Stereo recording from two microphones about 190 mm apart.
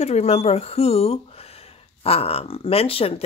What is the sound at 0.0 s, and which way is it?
Speech, 35° left (ahead or behind).